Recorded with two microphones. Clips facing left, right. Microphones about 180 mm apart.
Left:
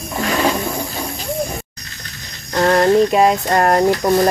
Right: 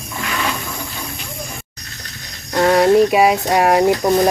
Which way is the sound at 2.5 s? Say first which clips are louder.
Right 1 dB; 5° right (ahead or behind).